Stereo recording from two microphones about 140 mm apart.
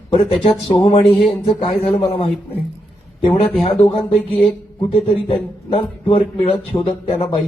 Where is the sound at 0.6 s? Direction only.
40° left (ahead or behind).